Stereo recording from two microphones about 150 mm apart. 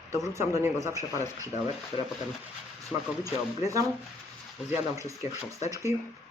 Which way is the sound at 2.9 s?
15° right (ahead or behind).